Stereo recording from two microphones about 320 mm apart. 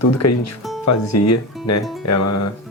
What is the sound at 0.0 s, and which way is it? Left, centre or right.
Speech, left.